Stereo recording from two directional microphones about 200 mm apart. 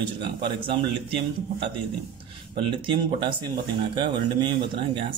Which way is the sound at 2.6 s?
25° right (ahead or behind).